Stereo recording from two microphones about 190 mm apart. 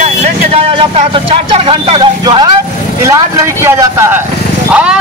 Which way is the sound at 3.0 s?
15° right (ahead or behind).